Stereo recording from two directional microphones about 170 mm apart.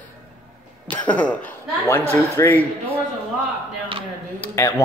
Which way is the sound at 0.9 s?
10° left (ahead or behind).